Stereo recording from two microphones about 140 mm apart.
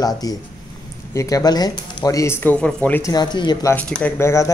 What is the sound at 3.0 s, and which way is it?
Speech, 30° left (ahead or behind).